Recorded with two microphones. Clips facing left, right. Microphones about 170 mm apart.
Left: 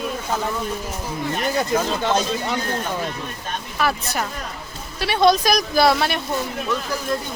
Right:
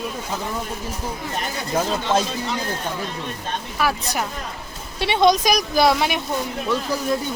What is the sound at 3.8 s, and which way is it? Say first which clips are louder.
Speech: even; 10° right (ahead or behind).